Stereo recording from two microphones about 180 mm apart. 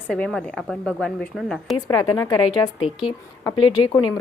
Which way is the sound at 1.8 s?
20° left (ahead or behind).